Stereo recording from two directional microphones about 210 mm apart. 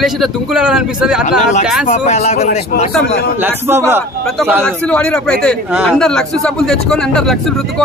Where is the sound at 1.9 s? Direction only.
30° left (ahead or behind).